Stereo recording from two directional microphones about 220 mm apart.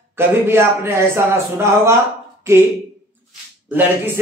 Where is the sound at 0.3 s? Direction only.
10° right (ahead or behind).